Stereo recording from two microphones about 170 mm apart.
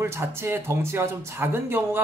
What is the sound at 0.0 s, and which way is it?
Speech, 15° right (ahead or behind).